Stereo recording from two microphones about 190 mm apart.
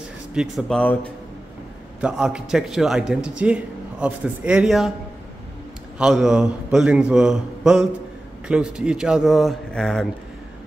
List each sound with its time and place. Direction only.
0.3 s a man's voice: 5° right (ahead or behind)
2.0 s a man's voice: 5° right (ahead or behind)
5.9 s a man's voice: 5° right (ahead or behind)